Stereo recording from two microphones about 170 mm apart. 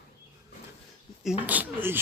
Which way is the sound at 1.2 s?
5° right (ahead or behind).